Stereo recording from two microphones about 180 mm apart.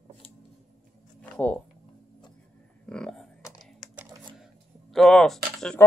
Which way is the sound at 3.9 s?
15° right (ahead or behind).